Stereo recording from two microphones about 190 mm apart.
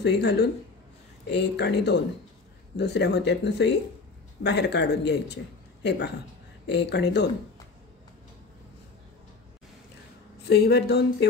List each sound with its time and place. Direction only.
0.0 s a man's voice: 65° left (ahead or behind)
10.5 s a man's voice: 60° left (ahead or behind)